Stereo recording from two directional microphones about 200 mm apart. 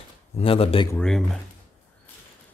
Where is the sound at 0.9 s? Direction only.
5° left (ahead or behind).